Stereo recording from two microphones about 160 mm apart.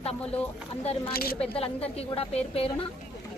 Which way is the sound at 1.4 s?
40° left (ahead or behind).